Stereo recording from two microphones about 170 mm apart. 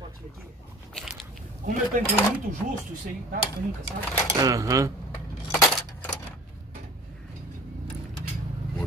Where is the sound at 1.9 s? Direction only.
50° right (ahead or behind).